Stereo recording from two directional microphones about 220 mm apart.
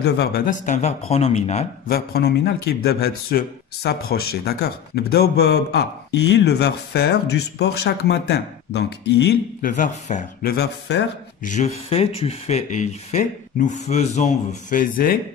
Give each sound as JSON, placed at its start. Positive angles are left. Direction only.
{"t": 0.0, "sound": "speech", "side_deg": 50}
{"t": 0.5, "sound": "speech", "side_deg": 35}
{"t": 1.9, "sound": "speech", "side_deg": 45}
{"t": 10.5, "sound": "speech", "side_deg": 50}
{"t": 11.5, "sound": "speech", "side_deg": 30}